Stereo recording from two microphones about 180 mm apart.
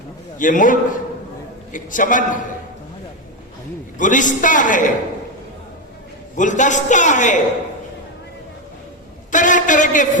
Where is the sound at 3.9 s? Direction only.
45° left (ahead or behind).